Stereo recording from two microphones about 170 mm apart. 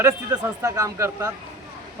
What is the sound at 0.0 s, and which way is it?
A man's voice, 15° right (ahead or behind).